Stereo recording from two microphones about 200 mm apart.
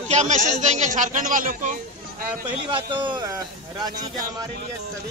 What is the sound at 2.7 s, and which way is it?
Speech, 25° right (ahead or behind).